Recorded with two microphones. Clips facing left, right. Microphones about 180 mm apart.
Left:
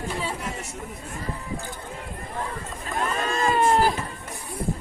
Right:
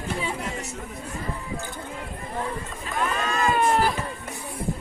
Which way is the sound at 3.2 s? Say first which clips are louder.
Left 1 dB; 35° left (ahead or behind).